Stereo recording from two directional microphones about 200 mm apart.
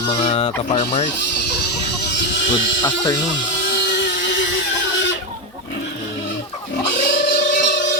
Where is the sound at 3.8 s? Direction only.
65° left (ahead or behind).